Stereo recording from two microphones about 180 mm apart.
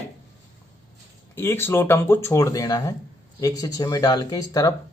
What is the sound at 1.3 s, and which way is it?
Speech, 15° left (ahead or behind).